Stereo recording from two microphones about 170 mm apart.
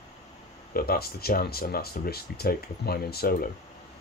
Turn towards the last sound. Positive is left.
turn(degrees=65)  # may be behind; listen again after turning